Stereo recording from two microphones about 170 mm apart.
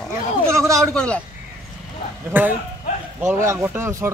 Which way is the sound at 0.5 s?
15° right (ahead or behind).